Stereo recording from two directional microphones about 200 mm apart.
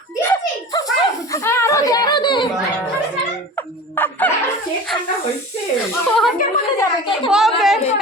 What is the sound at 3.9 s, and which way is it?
Chicken, 10° left (ahead or behind).